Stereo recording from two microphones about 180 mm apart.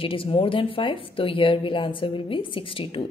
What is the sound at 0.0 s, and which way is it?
A woman's voice, 30° left (ahead or behind).